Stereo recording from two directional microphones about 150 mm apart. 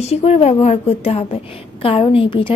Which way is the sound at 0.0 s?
45° left (ahead or behind).